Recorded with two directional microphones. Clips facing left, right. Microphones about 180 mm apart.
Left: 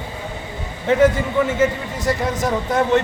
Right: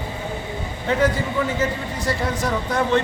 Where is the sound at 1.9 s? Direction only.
20° left (ahead or behind).